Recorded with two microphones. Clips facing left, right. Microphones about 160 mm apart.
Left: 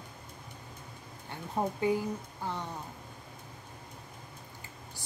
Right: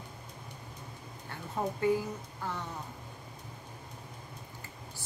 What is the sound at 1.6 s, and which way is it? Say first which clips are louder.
Speech: left 2 dB; 20° left (ahead or behind).